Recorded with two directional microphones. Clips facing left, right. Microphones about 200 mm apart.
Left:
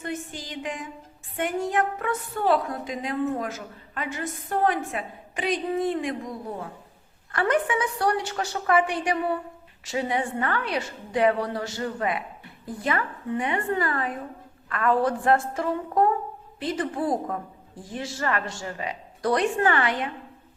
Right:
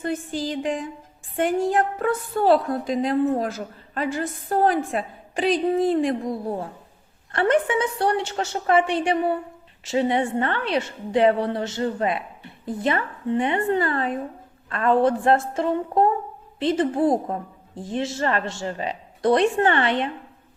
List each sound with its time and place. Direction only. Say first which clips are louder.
0.0 s a woman's voice: right 7 dB; 35° right (ahead or behind)